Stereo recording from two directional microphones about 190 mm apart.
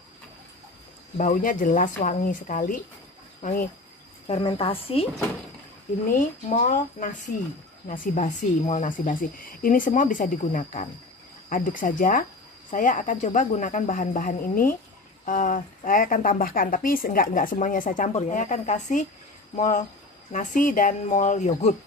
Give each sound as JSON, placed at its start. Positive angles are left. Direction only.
{"t": 1.1, "sound": "speech", "side_deg": 45}
{"t": 4.3, "sound": "a woman's voice", "side_deg": 30}
{"t": 6.5, "sound": "speech", "side_deg": 45}